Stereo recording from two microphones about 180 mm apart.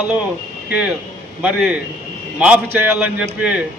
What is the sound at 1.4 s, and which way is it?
A man's voice, 5° right (ahead or behind).